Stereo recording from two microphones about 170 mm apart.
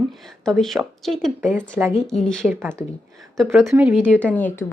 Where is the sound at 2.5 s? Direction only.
15° right (ahead or behind).